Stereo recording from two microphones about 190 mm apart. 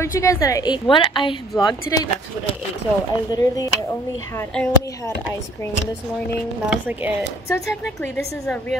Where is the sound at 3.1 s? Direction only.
20° left (ahead or behind).